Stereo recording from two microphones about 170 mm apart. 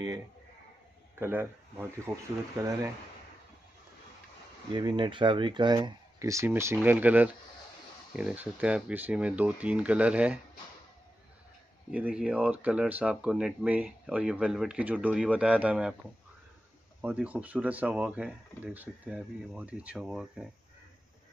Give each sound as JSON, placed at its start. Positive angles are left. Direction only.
{"t": 1.2, "sound": "speech", "side_deg": -15}
{"t": 4.7, "sound": "speech", "side_deg": -25}
{"t": 11.9, "sound": "speech", "side_deg": -5}
{"t": 17.0, "sound": "speech", "side_deg": -10}